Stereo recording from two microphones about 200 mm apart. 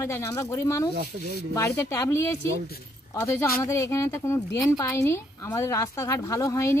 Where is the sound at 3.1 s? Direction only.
15° left (ahead or behind).